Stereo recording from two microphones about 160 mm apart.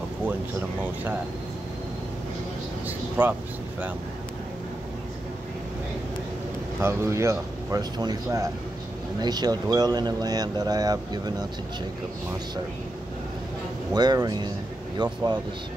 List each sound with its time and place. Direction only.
0.2 s speech: 10° right (ahead or behind)
3.2 s speech: 10° right (ahead or behind)
6.8 s speech: 15° right (ahead or behind)
13.9 s speech: 25° right (ahead or behind)